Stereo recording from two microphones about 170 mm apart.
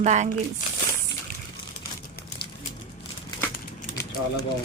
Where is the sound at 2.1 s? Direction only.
60° left (ahead or behind).